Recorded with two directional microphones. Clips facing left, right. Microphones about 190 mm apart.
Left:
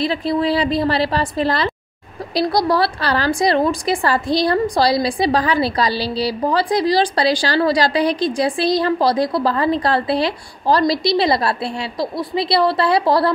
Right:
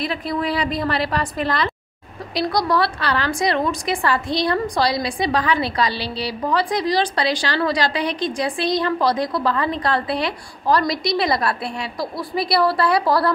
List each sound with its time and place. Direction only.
0.0 s a woman's voice: 30° left (ahead or behind)